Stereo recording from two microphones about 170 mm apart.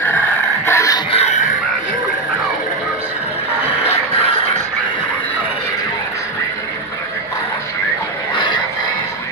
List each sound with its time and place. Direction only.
0.7 s music: 20° left (ahead or behind)
1.1 s music: 40° left (ahead or behind)
3.8 s music: 35° left (ahead or behind)